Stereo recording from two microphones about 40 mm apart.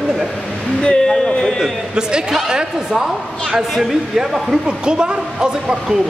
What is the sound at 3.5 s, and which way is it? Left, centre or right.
Speech, centre.